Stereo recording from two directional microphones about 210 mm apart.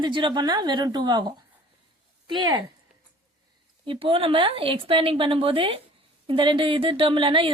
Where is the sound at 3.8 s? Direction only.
25° right (ahead or behind).